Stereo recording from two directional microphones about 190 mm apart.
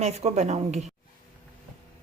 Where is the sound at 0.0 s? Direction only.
35° right (ahead or behind).